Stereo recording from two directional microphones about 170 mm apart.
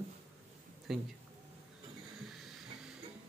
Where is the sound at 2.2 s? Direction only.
Centre (ahead or behind).